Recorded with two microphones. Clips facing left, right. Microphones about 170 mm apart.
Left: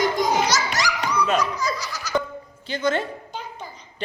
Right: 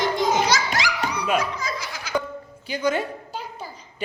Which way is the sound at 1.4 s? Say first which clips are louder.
Left 3 dB; 55° right (ahead or behind).